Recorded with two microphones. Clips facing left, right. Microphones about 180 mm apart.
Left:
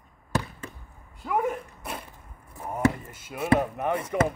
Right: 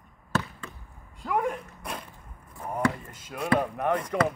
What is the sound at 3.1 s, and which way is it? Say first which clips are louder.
Speech: left 2 dB; 5° left (ahead or behind).